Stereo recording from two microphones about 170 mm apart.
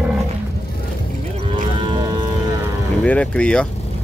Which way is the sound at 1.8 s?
30° right (ahead or behind).